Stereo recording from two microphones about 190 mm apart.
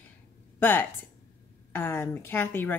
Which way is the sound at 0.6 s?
10° left (ahead or behind).